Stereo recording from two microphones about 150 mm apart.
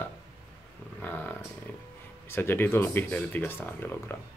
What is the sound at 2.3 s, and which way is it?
Speech, 15° left (ahead or behind).